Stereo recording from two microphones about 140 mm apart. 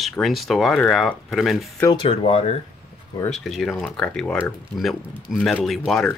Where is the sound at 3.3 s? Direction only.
Centre (ahead or behind).